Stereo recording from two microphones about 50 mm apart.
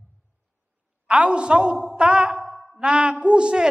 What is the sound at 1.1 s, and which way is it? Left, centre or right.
Speech, right.